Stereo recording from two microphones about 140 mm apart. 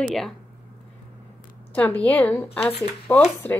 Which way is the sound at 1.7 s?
10° left (ahead or behind).